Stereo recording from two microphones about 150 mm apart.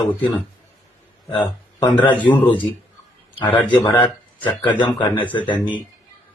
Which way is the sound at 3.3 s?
35° left (ahead or behind).